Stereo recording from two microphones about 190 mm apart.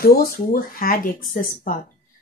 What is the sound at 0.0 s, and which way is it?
Speech, 50° left (ahead or behind).